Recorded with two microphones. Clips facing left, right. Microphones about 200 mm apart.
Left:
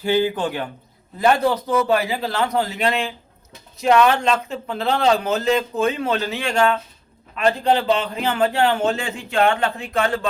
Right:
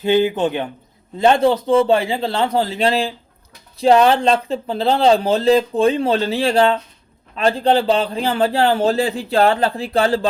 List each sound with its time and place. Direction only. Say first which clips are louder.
0.0 s speech: right 4 dB; 20° right (ahead or behind)